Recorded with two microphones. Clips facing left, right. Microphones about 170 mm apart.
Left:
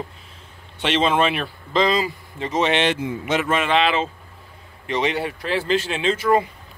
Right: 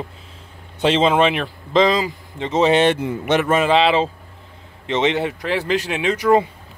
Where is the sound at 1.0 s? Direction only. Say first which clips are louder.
Right 3 dB; 15° right (ahead or behind).